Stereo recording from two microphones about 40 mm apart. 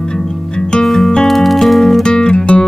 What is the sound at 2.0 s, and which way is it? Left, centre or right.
Music, centre.